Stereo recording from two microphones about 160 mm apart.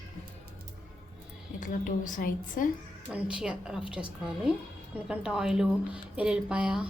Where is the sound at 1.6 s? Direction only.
55° left (ahead or behind).